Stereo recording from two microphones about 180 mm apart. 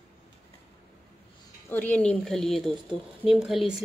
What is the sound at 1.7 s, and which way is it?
Speech, 10° left (ahead or behind).